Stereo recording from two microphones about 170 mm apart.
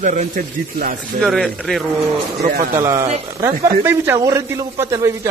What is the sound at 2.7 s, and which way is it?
A man's voice, 15° right (ahead or behind).